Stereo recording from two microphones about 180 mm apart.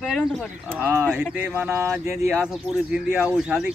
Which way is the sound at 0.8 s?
10° right (ahead or behind).